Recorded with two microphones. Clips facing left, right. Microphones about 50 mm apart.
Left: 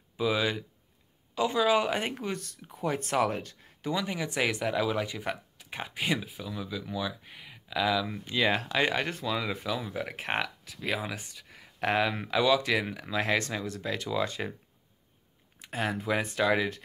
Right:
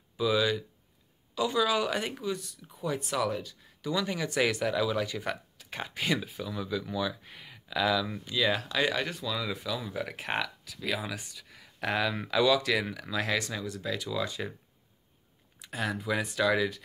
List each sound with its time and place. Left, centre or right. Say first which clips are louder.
0.2 s speech: right 1 dB; left
3.9 s speech: right 1 dB; left
6.2 s speech: right 2 dB; centre
8.3 s speech: left 2 dB; left
9.8 s speech: left 1 dB; centre; by 14.5 s left
15.6 s speech: left 1 dB; left